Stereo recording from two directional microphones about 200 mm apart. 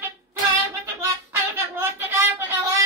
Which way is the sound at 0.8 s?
10° right (ahead or behind).